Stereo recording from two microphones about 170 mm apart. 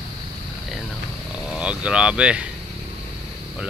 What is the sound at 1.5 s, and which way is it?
Speech, 5° right (ahead or behind).